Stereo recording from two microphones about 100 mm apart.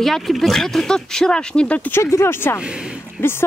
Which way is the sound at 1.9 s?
25° left (ahead or behind).